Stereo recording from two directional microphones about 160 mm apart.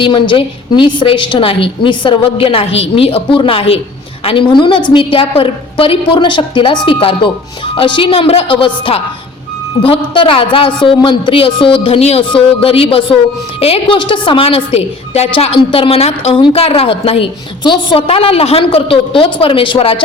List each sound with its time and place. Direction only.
0.0 s a woman's voice: 30° left (ahead or behind)